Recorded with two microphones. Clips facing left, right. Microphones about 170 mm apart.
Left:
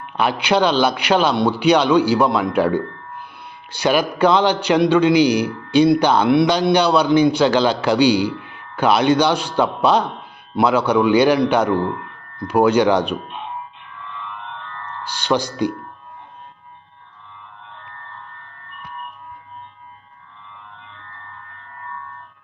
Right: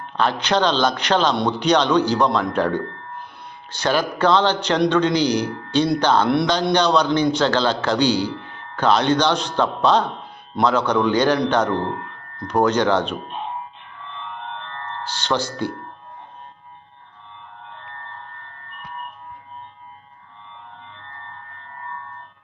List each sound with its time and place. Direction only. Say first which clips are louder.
0.2 s a man's voice: left 2 dB; 10° left (ahead or behind)
14.3 s music: right 1 dB; 40° right (ahead or behind)
15.2 s a man's voice: left 4 dB; 15° left (ahead or behind)